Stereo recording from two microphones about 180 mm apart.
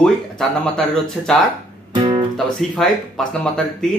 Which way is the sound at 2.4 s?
Centre (ahead or behind).